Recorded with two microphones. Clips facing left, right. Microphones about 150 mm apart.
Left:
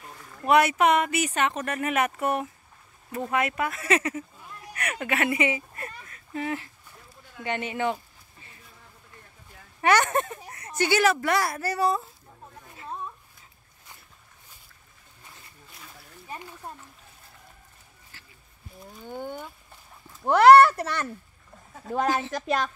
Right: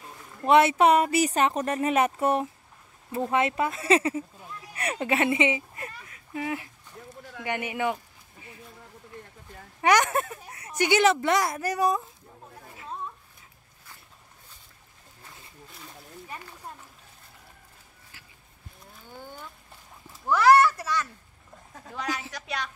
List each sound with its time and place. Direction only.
0.4 s speech: 25° right (ahead or behind)
7.4 s a sound: 10° right (ahead or behind)
9.8 s speech: 15° right (ahead or behind)
19.0 s a child's voice: 55° left (ahead or behind)
21.9 s speech: 50° left (ahead or behind)